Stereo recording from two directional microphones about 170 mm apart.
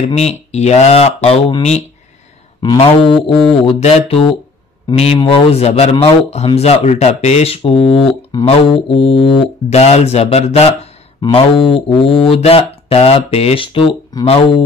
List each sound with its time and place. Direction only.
0.1 s speech: 40° left (ahead or behind)
3.2 s mantra: centre (ahead or behind)
3.6 s speech: 35° left (ahead or behind)